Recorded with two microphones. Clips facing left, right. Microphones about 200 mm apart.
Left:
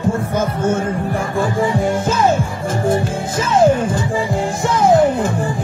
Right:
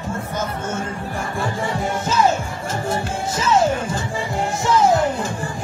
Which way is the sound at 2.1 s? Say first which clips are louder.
Even; 55° left (ahead or behind).